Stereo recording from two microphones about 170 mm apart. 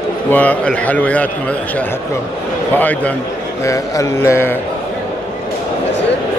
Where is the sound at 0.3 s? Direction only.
10° left (ahead or behind).